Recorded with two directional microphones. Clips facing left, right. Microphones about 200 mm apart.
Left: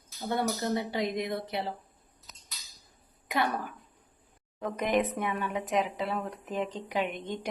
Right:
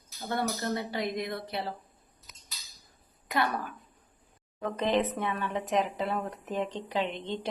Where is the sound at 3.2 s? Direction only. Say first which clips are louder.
Even; 15° left (ahead or behind).